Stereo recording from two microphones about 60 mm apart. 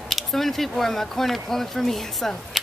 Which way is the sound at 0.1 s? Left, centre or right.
Centre.